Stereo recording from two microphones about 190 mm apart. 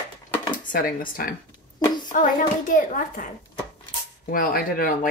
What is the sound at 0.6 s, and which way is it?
Speech, 45° left (ahead or behind).